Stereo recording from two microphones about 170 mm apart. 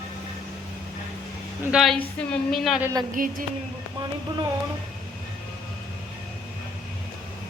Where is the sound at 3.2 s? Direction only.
55° right (ahead or behind).